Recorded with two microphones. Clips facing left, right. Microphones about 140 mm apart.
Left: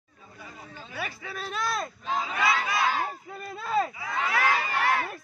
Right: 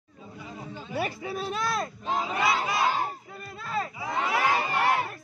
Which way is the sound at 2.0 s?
30° right (ahead or behind).